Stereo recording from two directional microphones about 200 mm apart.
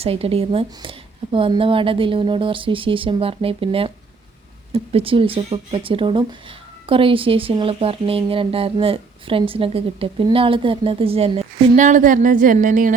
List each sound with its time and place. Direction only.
0.0 s a woman's voice: 30° right (ahead or behind)